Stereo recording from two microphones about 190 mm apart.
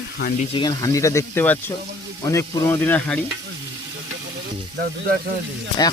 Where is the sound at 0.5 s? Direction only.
20° left (ahead or behind).